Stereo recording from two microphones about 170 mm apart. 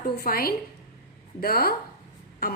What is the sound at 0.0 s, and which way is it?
A woman's voice, 60° left (ahead or behind).